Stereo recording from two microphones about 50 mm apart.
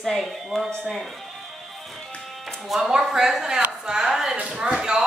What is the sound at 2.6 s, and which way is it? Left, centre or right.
Speech, centre.